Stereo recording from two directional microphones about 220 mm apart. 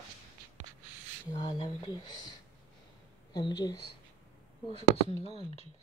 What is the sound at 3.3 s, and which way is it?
Speech, 20° left (ahead or behind).